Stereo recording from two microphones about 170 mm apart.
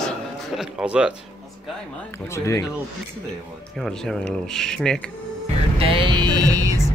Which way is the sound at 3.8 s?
Centre (ahead or behind).